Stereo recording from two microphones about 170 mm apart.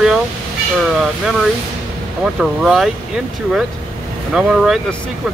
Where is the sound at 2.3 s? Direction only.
Centre (ahead or behind).